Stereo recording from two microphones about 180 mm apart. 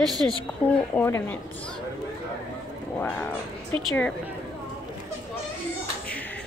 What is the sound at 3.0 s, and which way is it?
A woman's voice, 10° left (ahead or behind).